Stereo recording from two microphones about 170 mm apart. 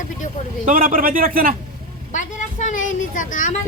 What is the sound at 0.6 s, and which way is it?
Speech, 55° right (ahead or behind).